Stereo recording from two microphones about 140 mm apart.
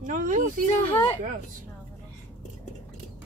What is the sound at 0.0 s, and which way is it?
Speech, 70° right (ahead or behind).